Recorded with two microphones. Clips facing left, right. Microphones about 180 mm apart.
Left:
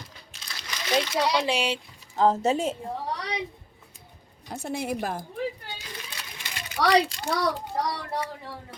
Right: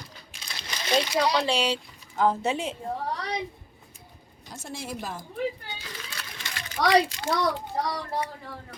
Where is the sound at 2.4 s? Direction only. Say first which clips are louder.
Left 4 dB; 40° left (ahead or behind).